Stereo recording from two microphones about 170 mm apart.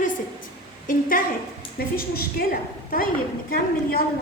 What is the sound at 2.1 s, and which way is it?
Speech, 60° left (ahead or behind).